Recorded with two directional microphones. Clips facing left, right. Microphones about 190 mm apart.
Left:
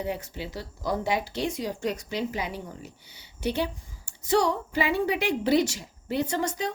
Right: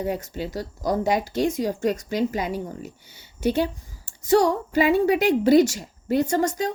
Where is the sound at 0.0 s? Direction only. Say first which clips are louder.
Right 5 dB; 45° right (ahead or behind).